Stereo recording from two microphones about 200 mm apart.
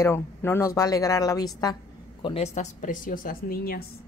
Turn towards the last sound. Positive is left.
turn(degrees=45)  # may be behind; listen again after turning